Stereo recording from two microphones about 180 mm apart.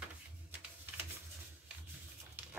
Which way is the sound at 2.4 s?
10° right (ahead or behind).